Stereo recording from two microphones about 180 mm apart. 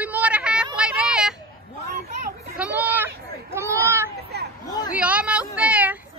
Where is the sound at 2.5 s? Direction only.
5° right (ahead or behind).